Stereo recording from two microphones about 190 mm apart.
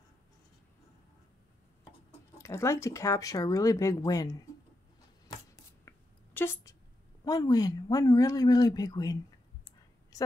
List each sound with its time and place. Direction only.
2.3 s speech: 15° left (ahead or behind)
5.9 s a sound: 10° left (ahead or behind)
7.2 s speech: 20° left (ahead or behind)